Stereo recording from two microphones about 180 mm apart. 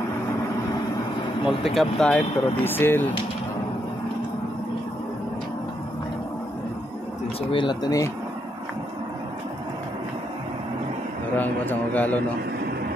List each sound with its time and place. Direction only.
1.8 s speech: 5° left (ahead or behind)
7.5 s speech: 25° left (ahead or behind)
11.3 s speech: 10° left (ahead or behind)